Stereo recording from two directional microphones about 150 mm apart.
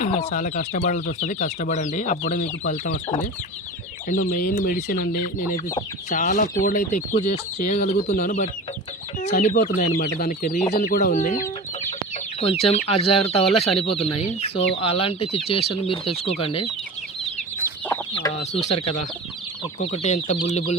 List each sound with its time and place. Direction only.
0.0 s speech: 55° left (ahead or behind)
4.1 s speech: 60° left (ahead or behind)
6.1 s speech: 55° left (ahead or behind)
8.0 s speech: 75° left (ahead or behind)
9.2 s speech: 55° left (ahead or behind)
11.9 s speech: 45° left (ahead or behind)
18.5 s speech: 40° left (ahead or behind)